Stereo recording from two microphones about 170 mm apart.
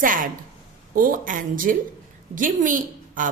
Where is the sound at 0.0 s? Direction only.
55° right (ahead or behind).